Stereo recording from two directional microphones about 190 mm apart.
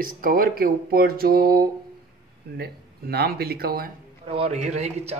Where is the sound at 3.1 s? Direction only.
55° right (ahead or behind).